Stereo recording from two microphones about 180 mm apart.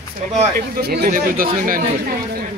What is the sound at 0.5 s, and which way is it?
Speech, 65° right (ahead or behind).